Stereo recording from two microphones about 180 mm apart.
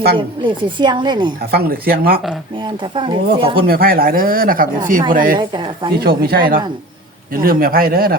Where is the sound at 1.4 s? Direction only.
60° right (ahead or behind).